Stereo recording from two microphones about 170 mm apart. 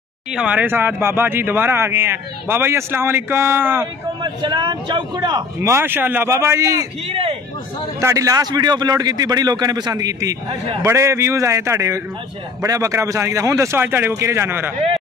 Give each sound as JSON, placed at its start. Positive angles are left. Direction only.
{"t": 0.3, "sound": "speech", "side_deg": -5}
{"t": 4.2, "sound": "a man's voice", "side_deg": -25}
{"t": 7.1, "sound": "a man's voice", "side_deg": -35}
{"t": 8.0, "sound": "a man's voice", "side_deg": -20}